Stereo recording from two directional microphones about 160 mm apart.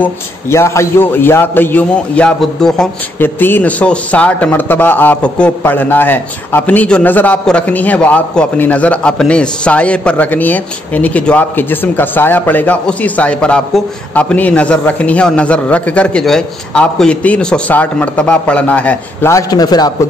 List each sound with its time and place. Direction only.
0.0 s a man's voice: 15° left (ahead or behind)
19.3 s a man's voice: 25° left (ahead or behind)